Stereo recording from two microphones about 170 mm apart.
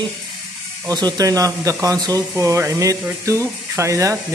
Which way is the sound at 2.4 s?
20° right (ahead or behind).